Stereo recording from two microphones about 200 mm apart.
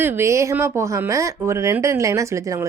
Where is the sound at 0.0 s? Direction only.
10° right (ahead or behind).